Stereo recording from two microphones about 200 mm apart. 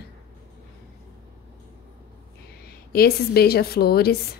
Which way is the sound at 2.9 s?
50° left (ahead or behind).